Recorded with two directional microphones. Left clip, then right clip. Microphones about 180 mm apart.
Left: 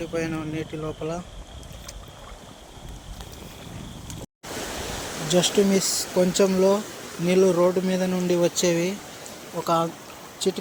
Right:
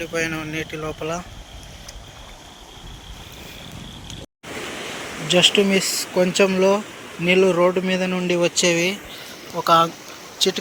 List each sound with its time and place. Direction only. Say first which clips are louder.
0.0 s speech: right 4 dB; centre (ahead or behind)
5.3 s speech: right 5 dB; centre (ahead or behind)